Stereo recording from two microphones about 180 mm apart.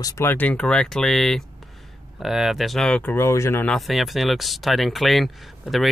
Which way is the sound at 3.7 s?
Centre (ahead or behind).